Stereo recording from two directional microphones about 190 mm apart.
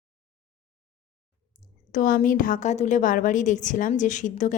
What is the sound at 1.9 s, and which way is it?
A woman's voice, 45° left (ahead or behind).